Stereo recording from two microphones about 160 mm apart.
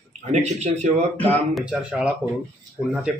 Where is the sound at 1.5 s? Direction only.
5° right (ahead or behind).